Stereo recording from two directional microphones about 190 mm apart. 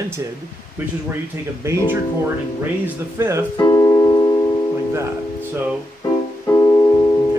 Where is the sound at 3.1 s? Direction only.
15° right (ahead or behind).